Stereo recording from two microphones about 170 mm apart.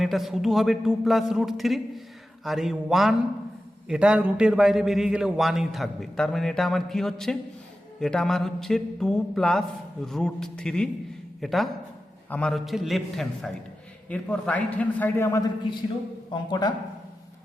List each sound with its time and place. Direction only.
0.0 s a man's voice: centre (ahead or behind); by 16.7 s 25° left (ahead or behind)